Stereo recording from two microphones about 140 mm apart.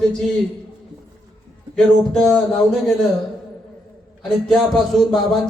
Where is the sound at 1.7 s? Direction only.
5° left (ahead or behind).